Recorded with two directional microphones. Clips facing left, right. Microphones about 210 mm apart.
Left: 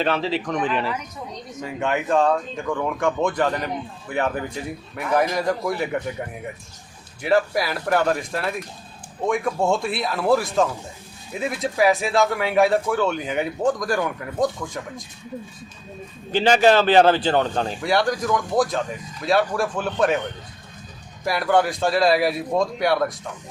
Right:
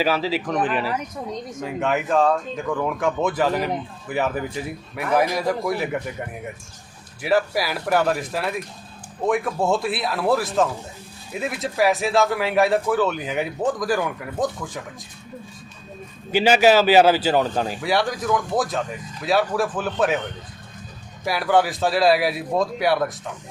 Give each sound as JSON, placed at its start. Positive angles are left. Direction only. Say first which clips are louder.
{"t": 0.0, "sound": "speech", "louder": "right 1 dB", "side_deg": -5}
{"t": 16.3, "sound": "speech", "louder": "right 1 dB", "side_deg": -10}
{"t": 21.2, "sound": "speech", "louder": "even", "side_deg": 0}